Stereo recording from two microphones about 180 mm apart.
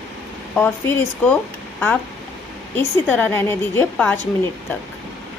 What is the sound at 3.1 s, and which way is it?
Speech, 10° left (ahead or behind).